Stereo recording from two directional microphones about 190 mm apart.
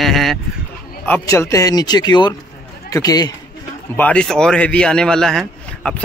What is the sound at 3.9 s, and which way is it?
Speech, 5° left (ahead or behind).